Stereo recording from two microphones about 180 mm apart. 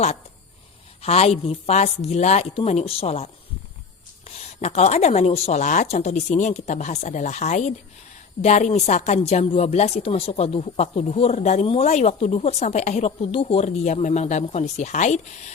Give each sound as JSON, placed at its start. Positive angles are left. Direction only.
{"t": 1.0, "sound": "a woman's voice", "side_deg": 35}
{"t": 4.4, "sound": "a woman's voice", "side_deg": 35}